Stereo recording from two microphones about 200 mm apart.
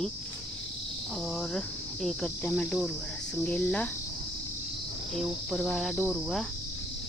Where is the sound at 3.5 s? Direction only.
5° left (ahead or behind).